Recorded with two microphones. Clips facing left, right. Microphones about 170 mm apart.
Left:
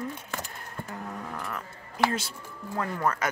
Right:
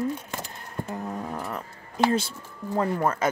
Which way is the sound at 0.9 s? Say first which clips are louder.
Right 5 dB; 25° right (ahead or behind).